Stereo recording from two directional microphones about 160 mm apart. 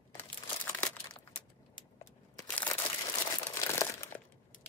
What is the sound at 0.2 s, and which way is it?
Crumpling, 15° left (ahead or behind).